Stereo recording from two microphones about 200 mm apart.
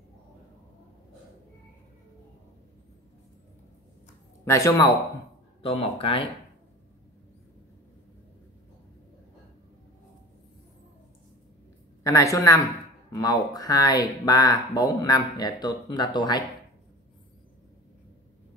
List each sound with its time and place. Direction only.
4.5 s a woman's voice: 15° left (ahead or behind)
5.6 s speech: 30° left (ahead or behind)
12.0 s a woman's voice: 15° left (ahead or behind)